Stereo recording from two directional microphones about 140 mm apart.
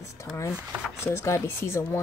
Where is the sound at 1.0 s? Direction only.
20° left (ahead or behind).